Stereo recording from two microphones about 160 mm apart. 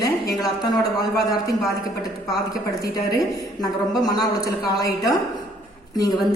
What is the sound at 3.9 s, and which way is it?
A woman's voice, 25° left (ahead or behind).